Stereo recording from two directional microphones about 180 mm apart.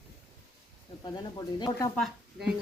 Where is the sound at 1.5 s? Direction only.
25° left (ahead or behind).